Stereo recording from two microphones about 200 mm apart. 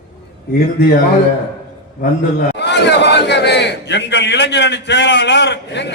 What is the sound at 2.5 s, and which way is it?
A man's voice, 60° left (ahead or behind).